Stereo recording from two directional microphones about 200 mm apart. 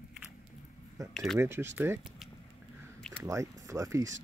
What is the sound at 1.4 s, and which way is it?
Speech, 10° right (ahead or behind).